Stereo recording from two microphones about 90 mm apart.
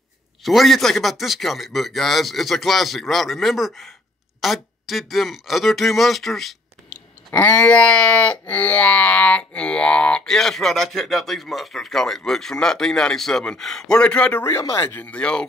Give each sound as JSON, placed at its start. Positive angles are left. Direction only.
{"t": 0.4, "sound": "speech", "side_deg": 0}
{"t": 7.2, "sound": "wail", "side_deg": 20}
{"t": 14.4, "sound": "speech", "side_deg": 35}
{"t": 14.9, "sound": "wail", "side_deg": 15}